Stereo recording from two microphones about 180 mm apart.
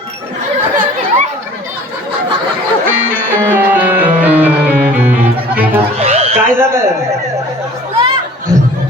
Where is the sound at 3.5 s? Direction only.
10° right (ahead or behind).